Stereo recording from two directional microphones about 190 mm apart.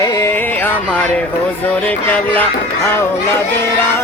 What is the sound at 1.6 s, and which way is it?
Speech, 10° left (ahead or behind).